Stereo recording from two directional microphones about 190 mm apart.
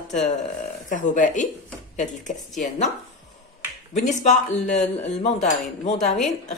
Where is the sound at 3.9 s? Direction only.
40° left (ahead or behind).